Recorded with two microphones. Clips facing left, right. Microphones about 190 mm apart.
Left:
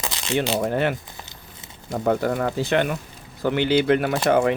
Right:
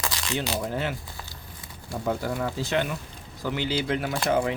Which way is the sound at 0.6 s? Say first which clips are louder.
Left 7 dB; 60° left (ahead or behind).